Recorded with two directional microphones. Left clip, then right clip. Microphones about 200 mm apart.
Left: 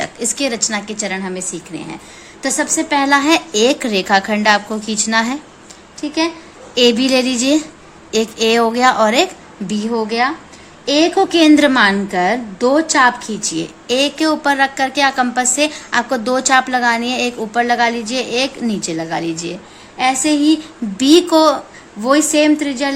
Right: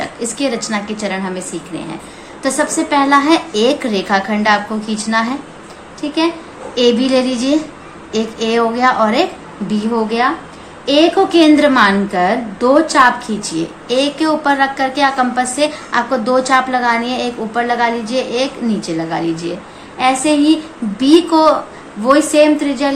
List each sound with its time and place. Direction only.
0.0 s a woman's voice: 50° left (ahead or behind)